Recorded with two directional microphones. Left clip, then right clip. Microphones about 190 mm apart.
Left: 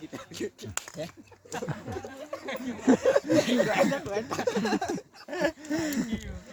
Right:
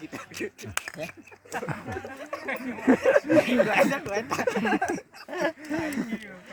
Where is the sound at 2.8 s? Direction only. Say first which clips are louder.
Right 1 dB; 40° left (ahead or behind).